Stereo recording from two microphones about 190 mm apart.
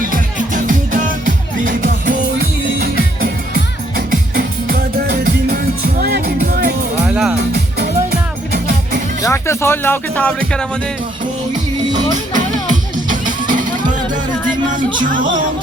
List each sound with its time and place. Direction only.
0.1 s music: 45° right (ahead or behind)
7.1 s music: 5° right (ahead or behind)
8.5 s music: 50° right (ahead or behind)
9.2 s speech: 15° left (ahead or behind)
11.9 s music: 40° right (ahead or behind)